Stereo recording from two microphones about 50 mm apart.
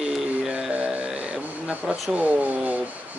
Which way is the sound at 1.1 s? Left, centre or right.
Centre.